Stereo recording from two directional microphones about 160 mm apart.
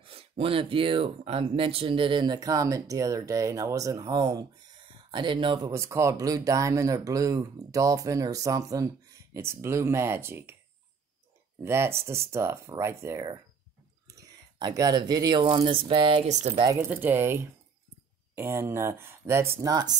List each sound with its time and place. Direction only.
0.0 s speech: 35° right (ahead or behind)
5.7 s speech: 20° right (ahead or behind)
11.6 s speech: 15° right (ahead or behind)
15.4 s speech: 35° right (ahead or behind)
16.3 s speech: 45° right (ahead or behind)
16.6 s speech: 15° right (ahead or behind)